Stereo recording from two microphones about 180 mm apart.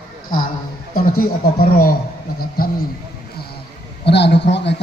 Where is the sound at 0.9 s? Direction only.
55° left (ahead or behind).